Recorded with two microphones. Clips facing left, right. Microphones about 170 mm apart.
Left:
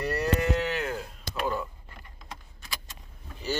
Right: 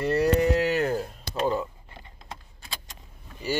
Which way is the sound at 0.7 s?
40° right (ahead or behind).